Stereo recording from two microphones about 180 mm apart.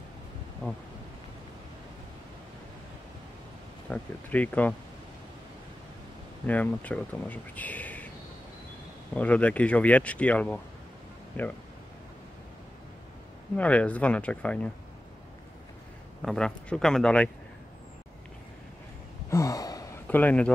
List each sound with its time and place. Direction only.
3.9 s speech: 10° left (ahead or behind)
6.4 s speech: 10° left (ahead or behind)
9.1 s speech: 5° left (ahead or behind)
13.6 s speech: 10° left (ahead or behind)
16.2 s speech: centre (ahead or behind)
19.3 s sigh: 20° left (ahead or behind)